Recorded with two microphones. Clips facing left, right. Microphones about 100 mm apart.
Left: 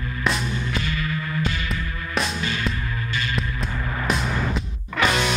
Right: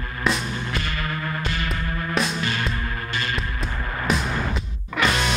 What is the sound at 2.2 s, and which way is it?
Music, centre (ahead or behind).